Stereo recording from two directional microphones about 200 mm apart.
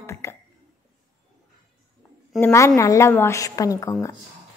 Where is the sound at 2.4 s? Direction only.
15° left (ahead or behind).